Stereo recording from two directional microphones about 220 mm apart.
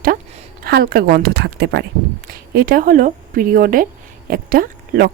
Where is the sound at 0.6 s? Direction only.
45° right (ahead or behind).